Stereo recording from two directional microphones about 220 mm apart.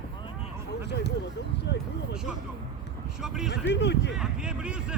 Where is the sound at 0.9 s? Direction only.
50° left (ahead or behind).